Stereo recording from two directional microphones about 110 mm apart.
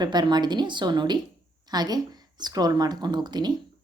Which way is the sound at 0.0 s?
40° right (ahead or behind).